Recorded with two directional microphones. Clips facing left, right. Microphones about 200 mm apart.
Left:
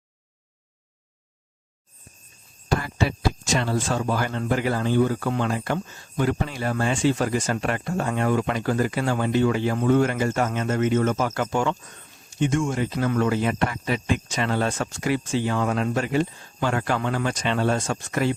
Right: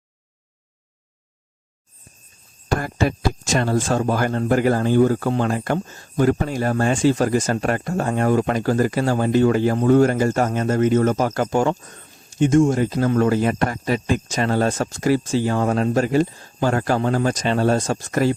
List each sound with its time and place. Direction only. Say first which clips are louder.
2.6 s speech: right 3 dB; 50° right (ahead or behind)